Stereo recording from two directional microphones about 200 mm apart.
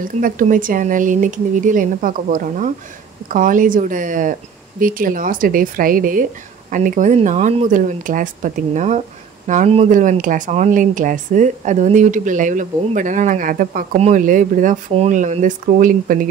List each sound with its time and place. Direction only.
0.0 s speech: 45° right (ahead or behind)